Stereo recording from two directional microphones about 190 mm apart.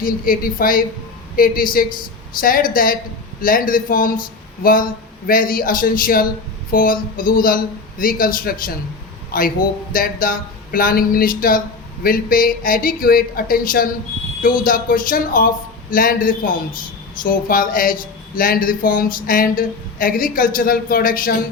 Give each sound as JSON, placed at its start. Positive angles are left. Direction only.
{"t": 0.0, "sound": "speech", "side_deg": 50}